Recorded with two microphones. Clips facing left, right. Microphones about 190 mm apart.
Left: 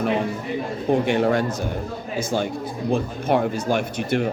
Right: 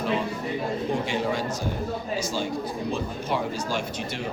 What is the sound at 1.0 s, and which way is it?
Speech, 60° left (ahead or behind).